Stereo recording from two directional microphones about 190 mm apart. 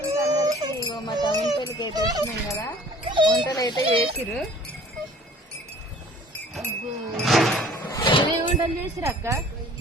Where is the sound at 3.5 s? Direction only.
20° left (ahead or behind).